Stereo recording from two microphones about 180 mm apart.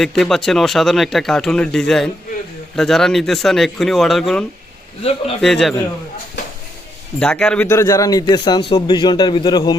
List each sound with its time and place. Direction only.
0.0 s a man's voice: centre (ahead or behind)
7.2 s a man's voice: 5° left (ahead or behind); by 9.7 s 25° left (ahead or behind)